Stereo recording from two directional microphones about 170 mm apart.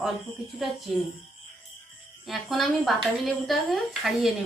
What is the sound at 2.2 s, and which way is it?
Speech, centre (ahead or behind).